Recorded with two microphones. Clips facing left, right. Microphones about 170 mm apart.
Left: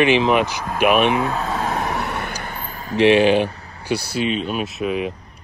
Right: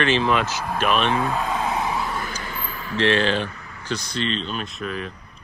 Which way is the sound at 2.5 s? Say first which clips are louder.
Left 1 dB; 40° left (ahead or behind).